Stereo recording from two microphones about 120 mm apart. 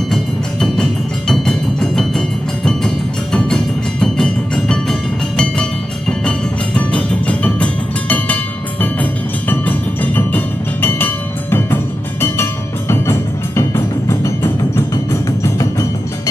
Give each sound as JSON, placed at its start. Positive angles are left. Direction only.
{"t": 0.1, "sound": "music", "side_deg": 5}